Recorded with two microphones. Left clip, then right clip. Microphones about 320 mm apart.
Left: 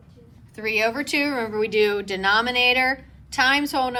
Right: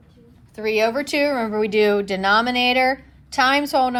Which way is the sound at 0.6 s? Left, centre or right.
Centre.